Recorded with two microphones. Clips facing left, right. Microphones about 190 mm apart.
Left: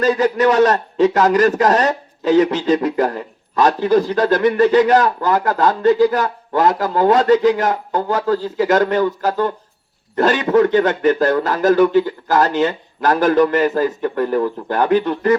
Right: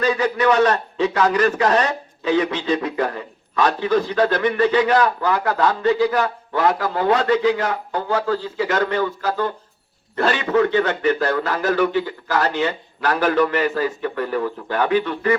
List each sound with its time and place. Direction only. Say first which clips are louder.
0.0 s a man's voice: left 4 dB; 40° left (ahead or behind)